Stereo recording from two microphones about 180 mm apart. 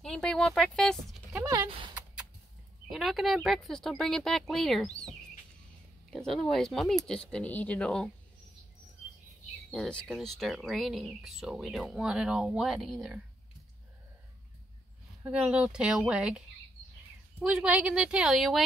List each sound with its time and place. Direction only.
0.0 s speech: 5° left (ahead or behind)
1.7 s a sound: 25° right (ahead or behind)
2.9 s speech: centre (ahead or behind)
9.7 s speech: 5° left (ahead or behind)
15.2 s speech: 5° right (ahead or behind)